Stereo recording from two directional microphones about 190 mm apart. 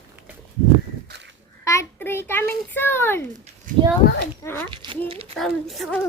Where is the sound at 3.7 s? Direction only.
45° right (ahead or behind).